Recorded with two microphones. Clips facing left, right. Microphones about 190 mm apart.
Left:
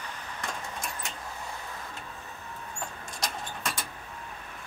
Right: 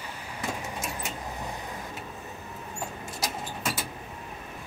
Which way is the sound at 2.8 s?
5° right (ahead or behind).